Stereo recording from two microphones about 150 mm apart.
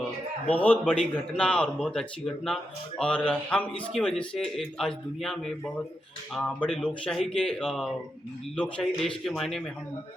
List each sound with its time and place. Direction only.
0.5 s a man's voice: 10° left (ahead or behind)